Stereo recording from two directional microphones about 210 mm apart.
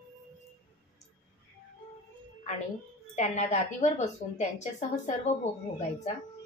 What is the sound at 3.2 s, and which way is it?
A woman's voice, 30° left (ahead or behind).